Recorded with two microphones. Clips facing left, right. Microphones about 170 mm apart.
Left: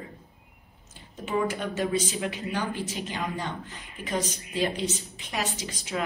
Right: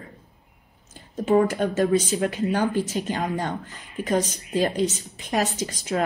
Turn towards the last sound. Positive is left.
turn(degrees=-45)  # may be behind; listen again after turning